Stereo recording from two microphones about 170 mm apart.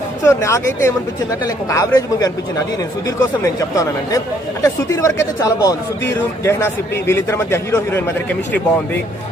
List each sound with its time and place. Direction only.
0.2 s speech: 15° left (ahead or behind)